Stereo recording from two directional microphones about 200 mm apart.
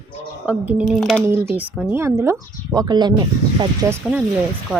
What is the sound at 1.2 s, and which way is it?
Speech, 10° right (ahead or behind).